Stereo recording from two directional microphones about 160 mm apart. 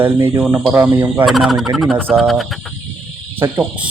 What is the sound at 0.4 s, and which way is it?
Speech, centre (ahead or behind).